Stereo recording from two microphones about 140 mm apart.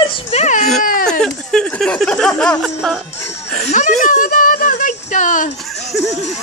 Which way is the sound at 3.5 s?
50° left (ahead or behind).